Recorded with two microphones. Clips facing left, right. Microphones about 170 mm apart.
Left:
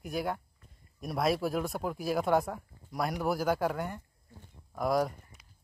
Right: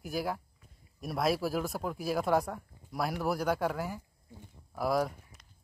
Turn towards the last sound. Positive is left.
turn(degrees=0)  # may be behind; listen again after turning